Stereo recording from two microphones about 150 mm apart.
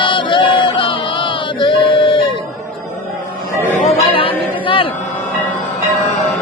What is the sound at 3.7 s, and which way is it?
Chatter, 45° left (ahead or behind).